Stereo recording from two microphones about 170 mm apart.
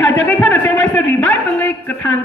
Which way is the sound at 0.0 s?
10° left (ahead or behind).